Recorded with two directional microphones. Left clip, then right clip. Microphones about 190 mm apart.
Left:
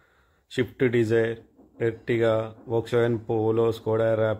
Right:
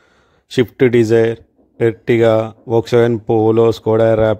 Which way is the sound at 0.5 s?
50° right (ahead or behind).